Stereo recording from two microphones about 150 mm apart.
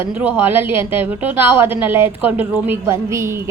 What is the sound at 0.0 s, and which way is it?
A woman's voice, 10° right (ahead or behind).